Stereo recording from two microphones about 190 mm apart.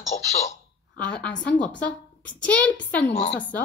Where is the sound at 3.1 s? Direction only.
35° left (ahead or behind).